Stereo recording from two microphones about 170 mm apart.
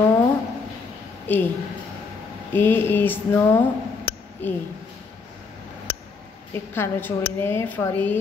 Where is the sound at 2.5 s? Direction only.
10° left (ahead or behind).